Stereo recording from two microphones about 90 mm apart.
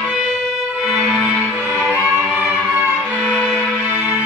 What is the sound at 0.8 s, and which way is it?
Music, centre (ahead or behind).